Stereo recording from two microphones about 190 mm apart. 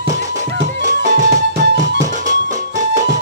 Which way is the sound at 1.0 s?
40° right (ahead or behind).